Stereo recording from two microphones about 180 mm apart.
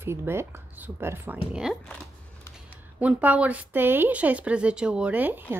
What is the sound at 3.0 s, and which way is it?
A woman's voice, 10° right (ahead or behind).